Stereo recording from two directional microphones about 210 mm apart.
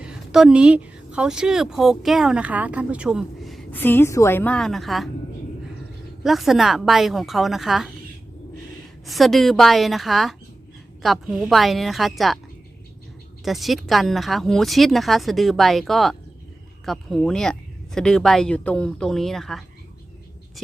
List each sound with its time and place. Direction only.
0.0 s speech: 5° right (ahead or behind)
6.2 s speech: centre (ahead or behind)
9.0 s speech: centre (ahead or behind)
13.4 s speech: centre (ahead or behind)